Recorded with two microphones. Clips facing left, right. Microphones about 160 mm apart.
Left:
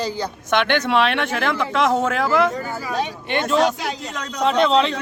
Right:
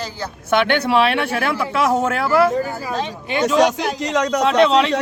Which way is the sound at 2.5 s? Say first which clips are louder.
Right 5 dB; 40° right (ahead or behind).